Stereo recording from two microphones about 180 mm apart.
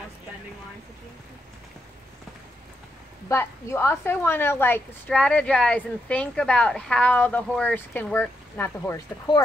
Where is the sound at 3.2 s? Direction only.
15° left (ahead or behind).